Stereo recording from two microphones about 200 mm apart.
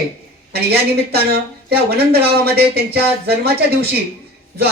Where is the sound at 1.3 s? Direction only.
50° right (ahead or behind).